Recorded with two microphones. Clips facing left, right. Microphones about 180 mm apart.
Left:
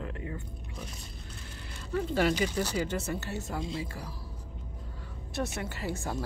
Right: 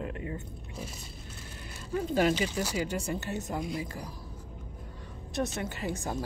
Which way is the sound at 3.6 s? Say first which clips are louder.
Left 1 dB; 25° left (ahead or behind).